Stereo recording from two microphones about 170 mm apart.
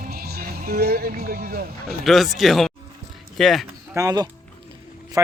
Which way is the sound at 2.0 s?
Centre (ahead or behind).